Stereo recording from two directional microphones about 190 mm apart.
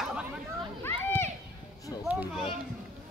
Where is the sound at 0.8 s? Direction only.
10° left (ahead or behind).